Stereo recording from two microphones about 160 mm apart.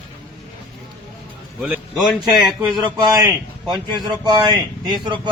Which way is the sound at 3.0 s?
25° right (ahead or behind).